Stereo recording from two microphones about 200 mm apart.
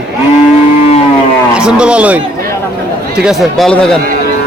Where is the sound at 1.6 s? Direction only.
5° right (ahead or behind).